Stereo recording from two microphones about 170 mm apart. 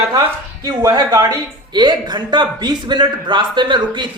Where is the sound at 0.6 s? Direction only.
25° right (ahead or behind).